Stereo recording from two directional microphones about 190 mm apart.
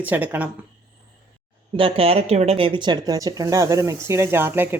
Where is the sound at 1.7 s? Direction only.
30° right (ahead or behind).